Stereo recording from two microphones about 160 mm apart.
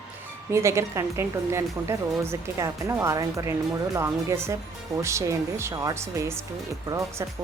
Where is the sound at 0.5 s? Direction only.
15° right (ahead or behind).